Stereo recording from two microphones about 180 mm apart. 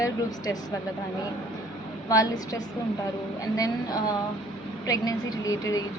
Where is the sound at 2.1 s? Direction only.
20° left (ahead or behind).